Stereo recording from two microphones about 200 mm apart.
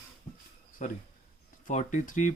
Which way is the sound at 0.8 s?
35° left (ahead or behind).